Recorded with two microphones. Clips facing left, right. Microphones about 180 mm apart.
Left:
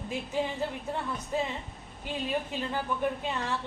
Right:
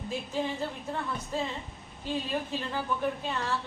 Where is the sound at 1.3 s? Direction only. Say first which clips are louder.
Left 2 dB; 15° left (ahead or behind).